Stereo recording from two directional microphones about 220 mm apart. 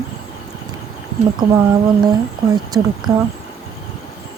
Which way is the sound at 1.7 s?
20° right (ahead or behind).